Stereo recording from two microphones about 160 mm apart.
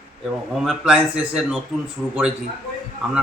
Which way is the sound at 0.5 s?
Centre (ahead or behind).